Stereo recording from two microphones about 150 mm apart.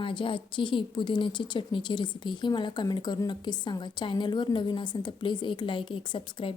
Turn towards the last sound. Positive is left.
turn(degrees=35)  # may be behind; listen again after turning